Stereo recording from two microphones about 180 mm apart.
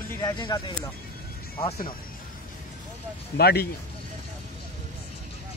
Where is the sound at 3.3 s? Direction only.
60° left (ahead or behind).